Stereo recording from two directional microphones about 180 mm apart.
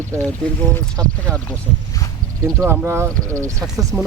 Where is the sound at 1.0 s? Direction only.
20° right (ahead or behind).